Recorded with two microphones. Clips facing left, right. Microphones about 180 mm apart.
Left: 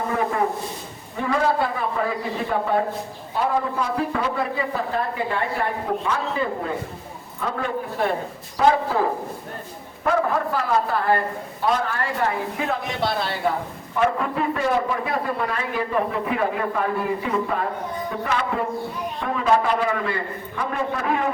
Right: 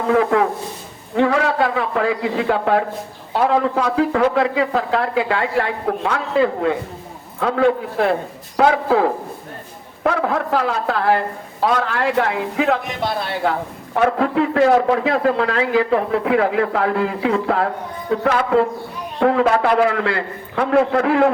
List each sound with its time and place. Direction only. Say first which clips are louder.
0.1 s a man's voice: right 9 dB; 85° right